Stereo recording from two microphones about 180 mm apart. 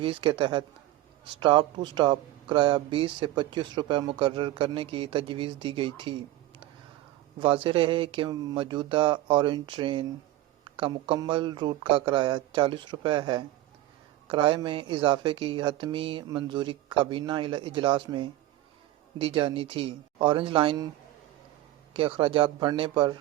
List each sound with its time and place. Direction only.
0.0 s speech: 25° right (ahead or behind)
7.3 s speech: 30° right (ahead or behind)
19.2 s speech: 30° right (ahead or behind)
21.9 s speech: 30° right (ahead or behind)